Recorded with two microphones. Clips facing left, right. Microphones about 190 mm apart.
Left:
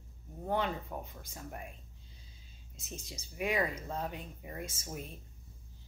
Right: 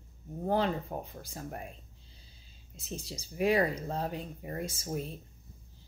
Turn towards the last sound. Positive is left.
turn(degrees=-35)  # may be behind; listen again after turning